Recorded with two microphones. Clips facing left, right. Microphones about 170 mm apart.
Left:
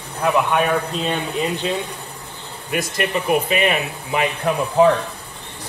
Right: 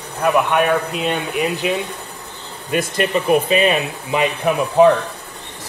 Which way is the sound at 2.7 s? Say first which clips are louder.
Right 3 dB; 25° right (ahead or behind).